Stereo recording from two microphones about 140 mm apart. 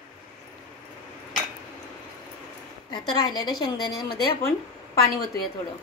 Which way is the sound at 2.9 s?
30° left (ahead or behind).